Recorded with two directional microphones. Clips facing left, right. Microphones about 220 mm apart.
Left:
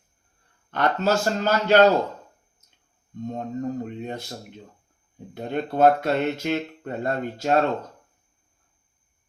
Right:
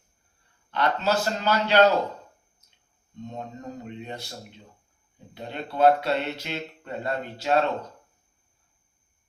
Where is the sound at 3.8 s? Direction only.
45° left (ahead or behind).